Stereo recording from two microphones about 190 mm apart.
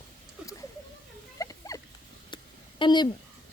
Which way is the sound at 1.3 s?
15° left (ahead or behind).